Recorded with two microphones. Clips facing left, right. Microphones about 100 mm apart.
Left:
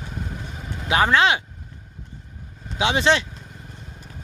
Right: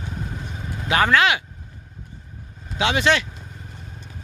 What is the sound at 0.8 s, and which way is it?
Speech, 20° left (ahead or behind).